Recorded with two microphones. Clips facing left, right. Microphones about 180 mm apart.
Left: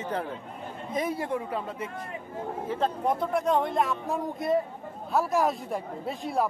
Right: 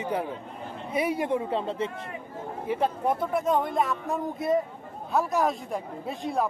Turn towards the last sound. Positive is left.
turn(degrees=0)  # may be behind; listen again after turning